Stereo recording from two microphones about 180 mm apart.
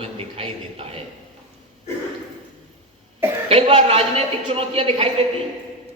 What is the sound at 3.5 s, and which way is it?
A man's voice, 35° right (ahead or behind).